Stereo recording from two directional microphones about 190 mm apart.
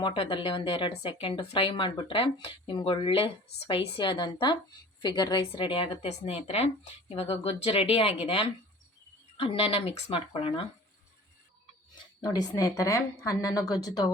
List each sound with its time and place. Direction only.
0.0 s speech: 25° left (ahead or behind)
12.2 s a woman's voice: 20° left (ahead or behind)